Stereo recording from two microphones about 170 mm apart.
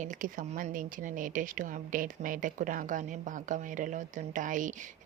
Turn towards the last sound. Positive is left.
turn(degrees=-50)  # may be behind; listen again after turning